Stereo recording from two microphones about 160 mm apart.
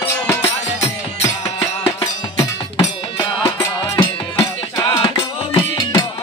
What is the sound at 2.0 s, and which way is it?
Music, 35° left (ahead or behind).